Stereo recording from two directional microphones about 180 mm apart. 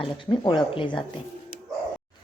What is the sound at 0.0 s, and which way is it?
A woman's voice, 30° left (ahead or behind).